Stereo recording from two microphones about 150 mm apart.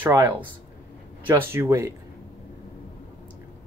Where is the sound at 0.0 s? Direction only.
15° right (ahead or behind).